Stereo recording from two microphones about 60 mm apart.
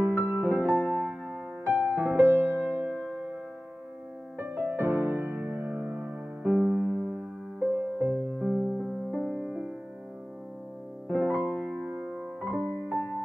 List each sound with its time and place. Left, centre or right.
0.0 s music: right
0.7 s music: centre
2.1 s music: right
4.4 s music: right
6.4 s music: centre
8.5 s music: centre
11.1 s piano: right